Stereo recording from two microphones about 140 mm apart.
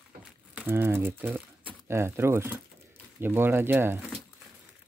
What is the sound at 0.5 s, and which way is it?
Speech, 15° right (ahead or behind).